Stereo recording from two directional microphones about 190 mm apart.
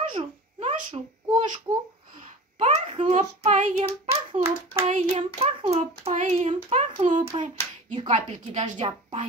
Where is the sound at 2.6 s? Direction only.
35° right (ahead or behind).